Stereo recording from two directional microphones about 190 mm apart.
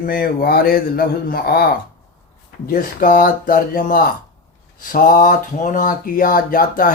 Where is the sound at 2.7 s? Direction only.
45° left (ahead or behind).